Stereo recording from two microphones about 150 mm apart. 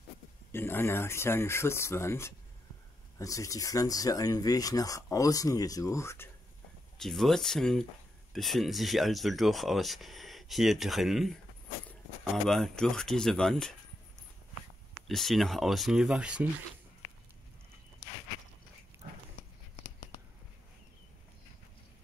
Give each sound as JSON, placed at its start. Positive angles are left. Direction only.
{"t": 0.5, "sound": "speech", "side_deg": 15}
{"t": 7.0, "sound": "speech", "side_deg": 0}
{"t": 12.4, "sound": "speech", "side_deg": 5}
{"t": 15.0, "sound": "speech", "side_deg": 0}